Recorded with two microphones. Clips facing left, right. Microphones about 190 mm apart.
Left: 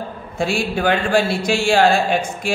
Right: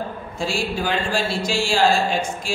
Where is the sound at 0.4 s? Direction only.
60° left (ahead or behind).